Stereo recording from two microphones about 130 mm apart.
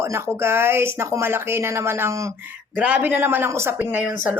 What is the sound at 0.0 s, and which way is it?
Speech, 20° right (ahead or behind).